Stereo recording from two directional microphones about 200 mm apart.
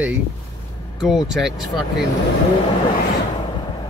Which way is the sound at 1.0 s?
Centre (ahead or behind).